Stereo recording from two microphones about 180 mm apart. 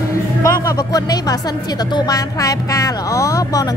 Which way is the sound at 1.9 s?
20° left (ahead or behind).